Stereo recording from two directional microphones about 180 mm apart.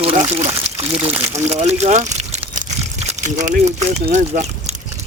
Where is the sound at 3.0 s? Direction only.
40° right (ahead or behind).